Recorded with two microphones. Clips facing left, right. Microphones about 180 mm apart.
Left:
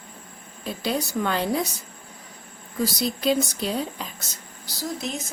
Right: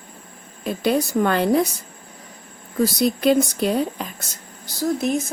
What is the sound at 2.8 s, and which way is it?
A woman's voice, 55° right (ahead or behind).